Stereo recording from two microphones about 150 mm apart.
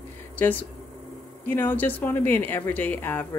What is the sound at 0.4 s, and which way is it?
Speech, 10° left (ahead or behind).